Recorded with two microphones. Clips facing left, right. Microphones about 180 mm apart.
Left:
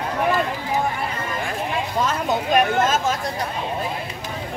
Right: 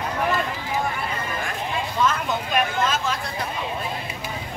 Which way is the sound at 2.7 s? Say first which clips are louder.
Left 4 dB; 45° left (ahead or behind).